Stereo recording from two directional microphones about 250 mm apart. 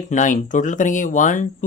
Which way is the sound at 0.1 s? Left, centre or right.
Left.